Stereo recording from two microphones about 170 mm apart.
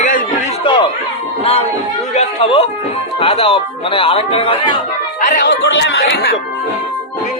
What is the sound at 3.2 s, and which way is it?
Speech, 35° left (ahead or behind).